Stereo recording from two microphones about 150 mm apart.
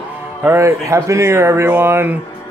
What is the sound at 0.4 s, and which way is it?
Speech, 15° right (ahead or behind).